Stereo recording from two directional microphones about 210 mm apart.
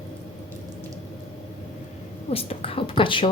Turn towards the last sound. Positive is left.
turn(degrees=25)  # may be behind; listen again after turning